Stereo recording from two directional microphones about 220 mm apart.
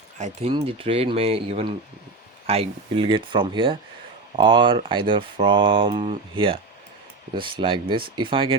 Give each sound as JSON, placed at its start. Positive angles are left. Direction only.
{"t": 0.2, "sound": "speech", "side_deg": -30}